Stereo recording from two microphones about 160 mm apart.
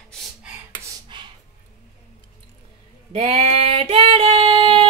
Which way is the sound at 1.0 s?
30° right (ahead or behind).